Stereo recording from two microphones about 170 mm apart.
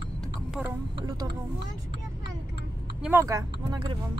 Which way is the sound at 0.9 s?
25° right (ahead or behind).